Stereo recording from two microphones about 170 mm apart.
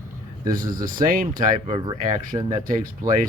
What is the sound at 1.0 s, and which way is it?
Speech, 50° right (ahead or behind).